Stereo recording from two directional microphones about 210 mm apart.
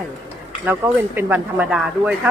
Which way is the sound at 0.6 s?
10° right (ahead or behind).